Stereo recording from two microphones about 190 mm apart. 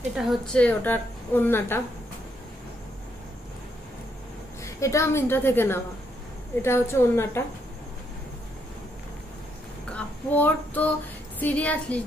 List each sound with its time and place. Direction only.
0.1 s a woman's voice: centre (ahead or behind)
4.7 s a woman's voice: 15° left (ahead or behind)
9.8 s child singing: 5° left (ahead or behind)
11.3 s a woman's voice: 10° left (ahead or behind)